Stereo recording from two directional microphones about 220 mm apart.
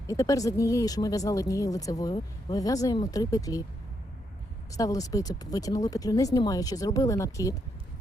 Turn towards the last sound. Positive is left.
turn(degrees=15)  # may be behind; listen again after turning